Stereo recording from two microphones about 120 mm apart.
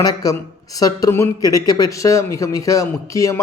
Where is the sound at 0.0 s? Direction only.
30° left (ahead or behind).